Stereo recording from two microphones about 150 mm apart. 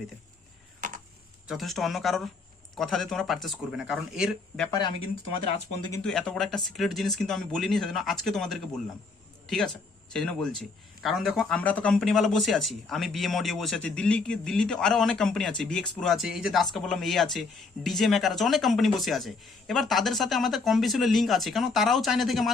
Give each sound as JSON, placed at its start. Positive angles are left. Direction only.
{"t": 0.8, "sound": "a sound", "side_deg": -65}
{"t": 1.5, "sound": "a man's voice", "side_deg": 0}
{"t": 4.7, "sound": "speech", "side_deg": 30}
{"t": 6.0, "sound": "a man's voice", "side_deg": 5}